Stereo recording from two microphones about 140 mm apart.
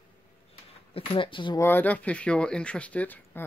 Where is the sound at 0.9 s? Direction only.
40° left (ahead or behind).